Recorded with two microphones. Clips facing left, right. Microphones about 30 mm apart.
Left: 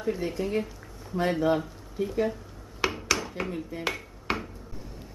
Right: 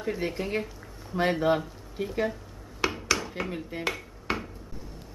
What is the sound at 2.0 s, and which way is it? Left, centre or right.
Speech, right.